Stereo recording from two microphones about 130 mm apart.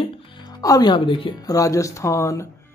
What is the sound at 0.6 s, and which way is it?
Speech, 30° left (ahead or behind).